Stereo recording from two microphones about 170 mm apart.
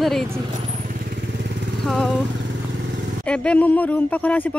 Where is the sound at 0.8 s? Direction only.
50° right (ahead or behind).